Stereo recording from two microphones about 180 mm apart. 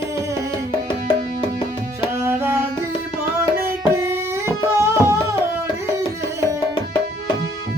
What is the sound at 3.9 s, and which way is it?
Music, 15° right (ahead or behind).